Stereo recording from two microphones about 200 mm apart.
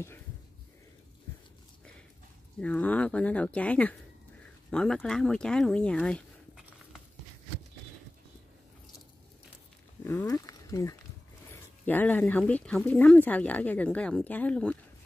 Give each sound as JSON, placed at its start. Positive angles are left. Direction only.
{"t": 2.6, "sound": "speech", "side_deg": 5}
{"t": 10.0, "sound": "speech", "side_deg": 15}